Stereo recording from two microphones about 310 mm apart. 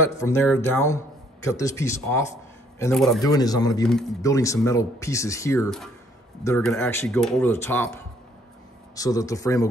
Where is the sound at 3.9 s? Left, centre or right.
Centre.